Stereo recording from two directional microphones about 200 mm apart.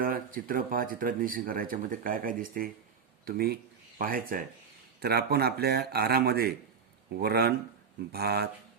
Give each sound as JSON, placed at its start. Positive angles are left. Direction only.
{"t": 0.0, "sound": "speech", "side_deg": -45}